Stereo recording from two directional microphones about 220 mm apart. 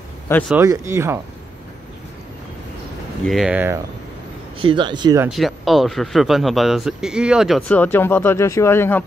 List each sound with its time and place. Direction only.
0.5 s speech: 10° right (ahead or behind)
3.3 s speech: centre (ahead or behind)
4.6 s speech: 20° right (ahead or behind)
5.3 s speech: centre (ahead or behind)